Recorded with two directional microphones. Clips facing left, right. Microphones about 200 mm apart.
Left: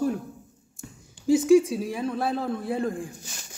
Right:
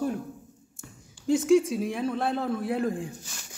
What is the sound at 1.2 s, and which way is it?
Speech, 5° left (ahead or behind).